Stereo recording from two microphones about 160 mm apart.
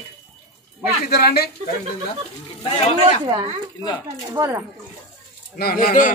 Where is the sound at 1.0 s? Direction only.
80° left.